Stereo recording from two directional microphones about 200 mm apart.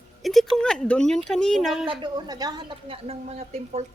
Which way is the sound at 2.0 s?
20° right (ahead or behind).